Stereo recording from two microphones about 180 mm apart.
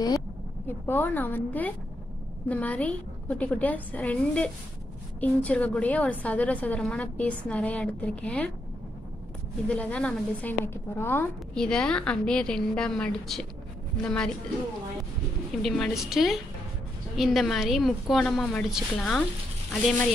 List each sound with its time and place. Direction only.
0.8 s a woman's voice: 10° left (ahead or behind)
9.7 s a woman's voice: 5° left (ahead or behind)
15.6 s a woman's voice: centre (ahead or behind)